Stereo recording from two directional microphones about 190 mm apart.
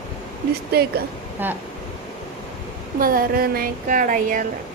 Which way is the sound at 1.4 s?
10° right (ahead or behind).